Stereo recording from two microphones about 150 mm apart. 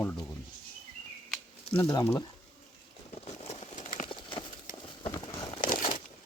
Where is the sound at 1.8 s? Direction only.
15° left (ahead or behind).